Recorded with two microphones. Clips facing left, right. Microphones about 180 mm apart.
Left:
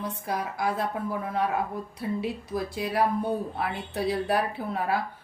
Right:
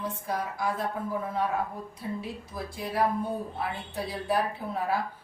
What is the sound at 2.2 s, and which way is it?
Speech, 70° left (ahead or behind).